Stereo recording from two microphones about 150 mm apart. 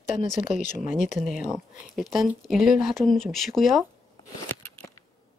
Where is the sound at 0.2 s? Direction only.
60° left (ahead or behind).